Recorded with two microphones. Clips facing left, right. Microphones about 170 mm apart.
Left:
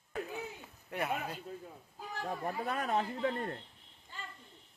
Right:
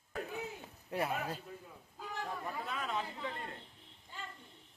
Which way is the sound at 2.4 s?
55° left (ahead or behind).